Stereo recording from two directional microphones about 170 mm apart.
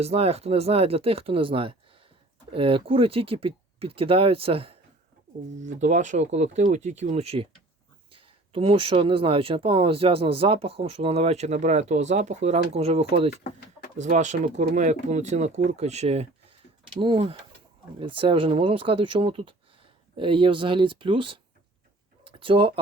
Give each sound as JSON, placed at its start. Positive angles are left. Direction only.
{"t": 0.0, "sound": "speech", "side_deg": -40}
{"t": 5.5, "sound": "speech", "side_deg": -45}
{"t": 22.2, "sound": "a sound", "side_deg": -30}